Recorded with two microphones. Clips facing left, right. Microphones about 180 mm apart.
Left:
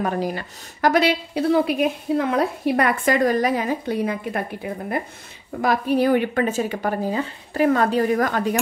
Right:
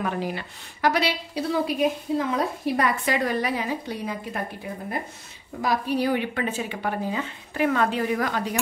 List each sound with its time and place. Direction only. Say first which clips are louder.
0.0 s a woman's voice: left 4 dB; 40° left (ahead or behind); by 2.9 s 65° left (ahead or behind)
3.1 s a woman's voice: left 6 dB; 45° left (ahead or behind); by 4.4 s 60° left (ahead or behind)
5.6 s a woman's voice: left 5 dB; 55° left (ahead or behind)